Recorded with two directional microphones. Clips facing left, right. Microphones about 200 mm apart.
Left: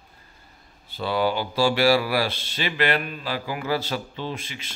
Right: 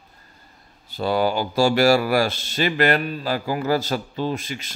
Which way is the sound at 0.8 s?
45° right (ahead or behind).